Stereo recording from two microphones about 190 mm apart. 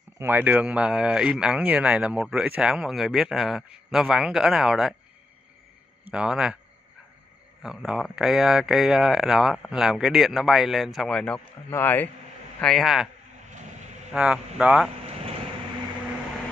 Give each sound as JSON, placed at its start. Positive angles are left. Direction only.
{"t": 0.2, "sound": "speech", "side_deg": -10}
{"t": 6.0, "sound": "speech", "side_deg": -5}
{"t": 7.6, "sound": "speech", "side_deg": 0}
{"t": 13.5, "sound": "vehicle", "side_deg": -40}
{"t": 14.1, "sound": "speech", "side_deg": -5}